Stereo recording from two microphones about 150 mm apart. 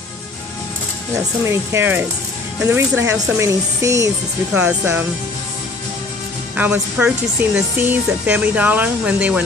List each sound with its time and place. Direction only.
1.4 s speech: 15° right (ahead or behind)
6.5 s speech: 10° right (ahead or behind)